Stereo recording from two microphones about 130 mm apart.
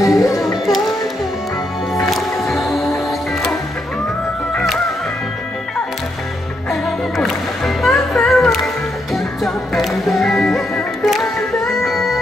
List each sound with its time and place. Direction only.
0.0 s music: 25° left (ahead or behind)
2.0 s music: centre (ahead or behind)
6.7 s music: centre (ahead or behind)